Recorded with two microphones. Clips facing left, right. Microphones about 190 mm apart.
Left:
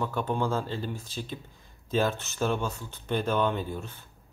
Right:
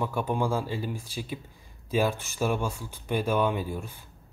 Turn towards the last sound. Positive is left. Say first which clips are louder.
# right 1 dB
turn(degrees=-10)  # may be behind; listen again after turning